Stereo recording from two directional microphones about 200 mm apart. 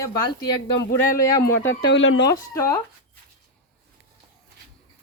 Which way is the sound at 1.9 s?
60° left (ahead or behind).